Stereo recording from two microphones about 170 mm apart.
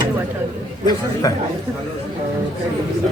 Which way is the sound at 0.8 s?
20° left (ahead or behind).